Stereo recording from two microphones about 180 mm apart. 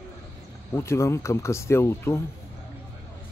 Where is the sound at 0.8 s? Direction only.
15° left (ahead or behind).